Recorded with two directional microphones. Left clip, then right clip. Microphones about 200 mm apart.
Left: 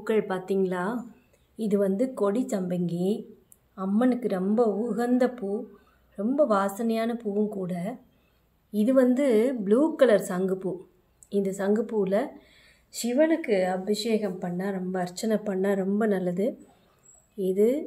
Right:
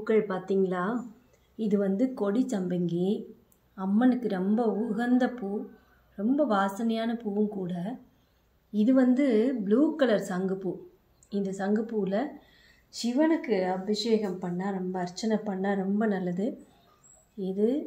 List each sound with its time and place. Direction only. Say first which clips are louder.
0.0 s a woman's voice: even; 20° left (ahead or behind)